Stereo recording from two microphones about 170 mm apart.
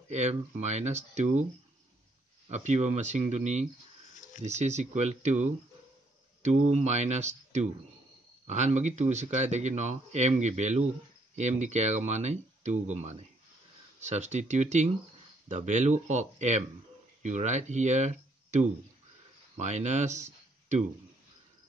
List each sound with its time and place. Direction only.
0.1 s speech: 40° right (ahead or behind)
2.5 s speech: 40° right (ahead or behind)